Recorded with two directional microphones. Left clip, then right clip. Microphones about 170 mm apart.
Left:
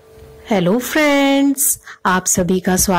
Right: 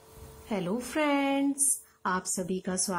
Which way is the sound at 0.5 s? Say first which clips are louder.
Left 17 dB; 30° left (ahead or behind).